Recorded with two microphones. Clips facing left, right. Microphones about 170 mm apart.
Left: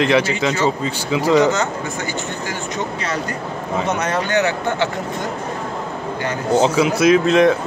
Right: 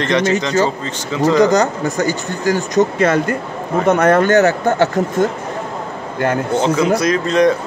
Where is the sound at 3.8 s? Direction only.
55° right (ahead or behind).